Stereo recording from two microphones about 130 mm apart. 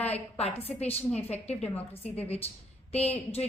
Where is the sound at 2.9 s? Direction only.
55° left (ahead or behind).